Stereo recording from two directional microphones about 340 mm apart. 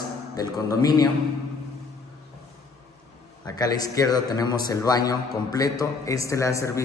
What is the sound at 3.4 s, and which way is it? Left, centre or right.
A man's voice, centre.